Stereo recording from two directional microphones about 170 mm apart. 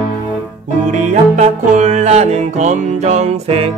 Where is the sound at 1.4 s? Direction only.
45° right (ahead or behind).